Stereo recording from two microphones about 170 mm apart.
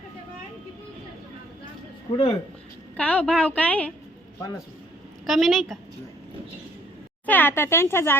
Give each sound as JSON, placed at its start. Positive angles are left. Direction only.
{"t": 2.1, "sound": "speech", "side_deg": 35}
{"t": 3.0, "sound": "speech", "side_deg": 5}
{"t": 5.2, "sound": "a woman's voice", "side_deg": 0}
{"t": 7.3, "sound": "speech", "side_deg": 10}